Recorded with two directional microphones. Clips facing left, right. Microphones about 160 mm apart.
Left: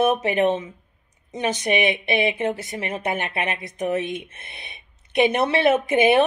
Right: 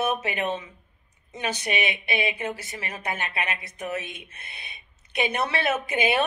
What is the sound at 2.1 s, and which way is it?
A woman's voice, 20° left (ahead or behind).